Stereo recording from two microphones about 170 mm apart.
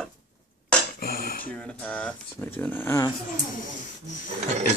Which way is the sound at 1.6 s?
5° left (ahead or behind).